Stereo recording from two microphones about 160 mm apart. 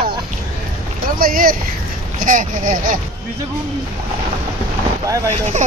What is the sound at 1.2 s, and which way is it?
Speech, 65° right (ahead or behind).